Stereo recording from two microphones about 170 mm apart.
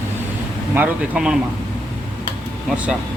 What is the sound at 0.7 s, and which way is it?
Speech, 5° right (ahead or behind).